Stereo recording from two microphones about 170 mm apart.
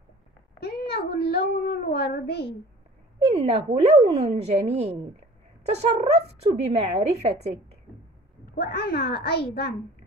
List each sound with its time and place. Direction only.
0.6 s a child's voice: 70° left (ahead or behind)
3.3 s speech: 35° right (ahead or behind)
8.5 s a child's voice: 65° left (ahead or behind)